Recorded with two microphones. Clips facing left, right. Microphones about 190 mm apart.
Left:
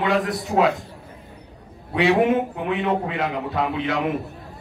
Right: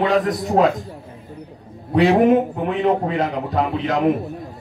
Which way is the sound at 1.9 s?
40° right (ahead or behind).